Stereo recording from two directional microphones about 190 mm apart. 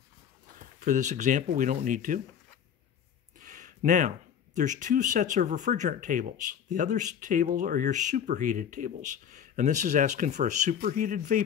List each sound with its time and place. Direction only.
0.6 s speech: 45° right (ahead or behind)
3.3 s a sound: 40° right (ahead or behind)
4.6 s speech: 40° right (ahead or behind)